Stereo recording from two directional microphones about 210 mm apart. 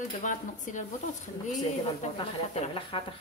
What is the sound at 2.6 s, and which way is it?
Speech, 25° left (ahead or behind).